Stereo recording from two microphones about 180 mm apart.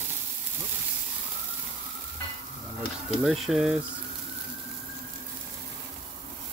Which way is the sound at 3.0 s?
Centre (ahead or behind).